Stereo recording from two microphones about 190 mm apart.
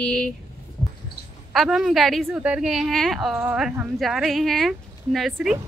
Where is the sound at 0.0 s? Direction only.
5° left (ahead or behind).